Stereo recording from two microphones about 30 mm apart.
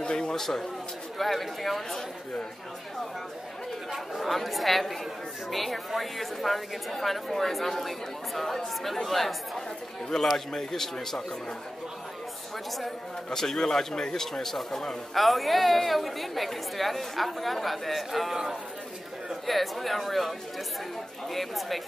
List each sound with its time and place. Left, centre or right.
0.0 s a sound: left
0.3 s a man's voice: centre
4.2 s a woman's voice: centre
10.1 s a man's voice: centre
13.3 s a man's voice: centre
15.1 s a woman's voice: centre